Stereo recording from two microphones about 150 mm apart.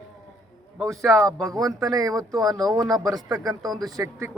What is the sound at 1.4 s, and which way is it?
Speech, 25° right (ahead or behind).